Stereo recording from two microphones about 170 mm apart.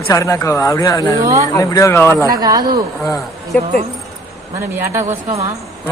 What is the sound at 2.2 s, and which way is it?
Speech, 20° right (ahead or behind).